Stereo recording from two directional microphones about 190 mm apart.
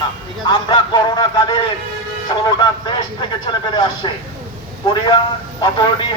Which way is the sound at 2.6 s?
25° left (ahead or behind).